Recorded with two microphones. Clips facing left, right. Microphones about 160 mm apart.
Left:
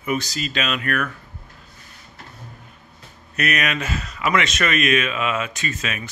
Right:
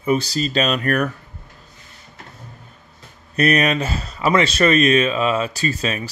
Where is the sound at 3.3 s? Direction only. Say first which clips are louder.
Right 6 dB; 30° right (ahead or behind).